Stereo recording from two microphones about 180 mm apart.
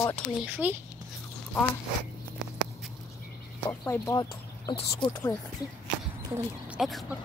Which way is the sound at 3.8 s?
15° left (ahead or behind).